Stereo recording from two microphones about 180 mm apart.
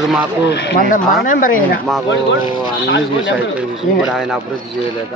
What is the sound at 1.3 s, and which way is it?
Speech, 50° left (ahead or behind).